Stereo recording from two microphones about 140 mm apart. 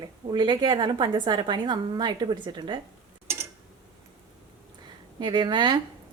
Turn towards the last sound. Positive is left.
turn(degrees=-35)  # may be behind; listen again after turning